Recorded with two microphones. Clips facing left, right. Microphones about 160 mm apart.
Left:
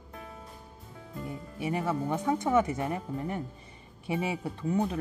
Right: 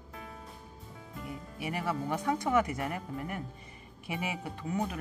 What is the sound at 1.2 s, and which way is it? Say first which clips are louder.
Speech: left 4 dB; 30° left (ahead or behind).